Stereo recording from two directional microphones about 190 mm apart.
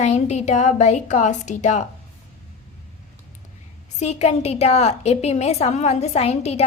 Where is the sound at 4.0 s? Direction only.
35° left (ahead or behind).